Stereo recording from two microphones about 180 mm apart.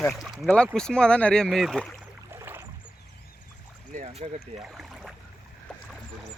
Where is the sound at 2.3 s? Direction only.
15° right (ahead or behind).